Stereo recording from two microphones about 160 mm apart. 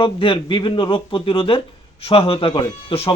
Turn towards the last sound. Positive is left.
turn(degrees=35)  # may be behind; listen again after turning